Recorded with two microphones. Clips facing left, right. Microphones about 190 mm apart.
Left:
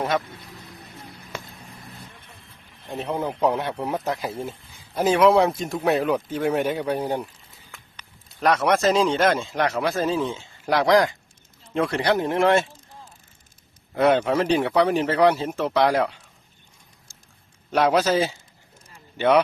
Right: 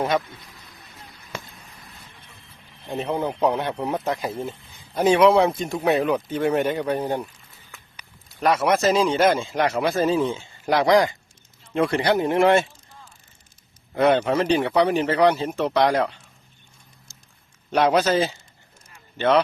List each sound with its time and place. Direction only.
2.9 s speech: centre (ahead or behind)
7.9 s speech: 5° right (ahead or behind)
13.9 s speech: centre (ahead or behind)
17.7 s speech: centre (ahead or behind)
18.9 s vehicle: 10° left (ahead or behind)